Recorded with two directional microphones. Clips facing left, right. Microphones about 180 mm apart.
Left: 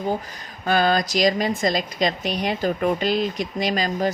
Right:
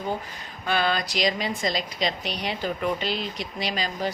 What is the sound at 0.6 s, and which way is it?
Speech, 45° left (ahead or behind).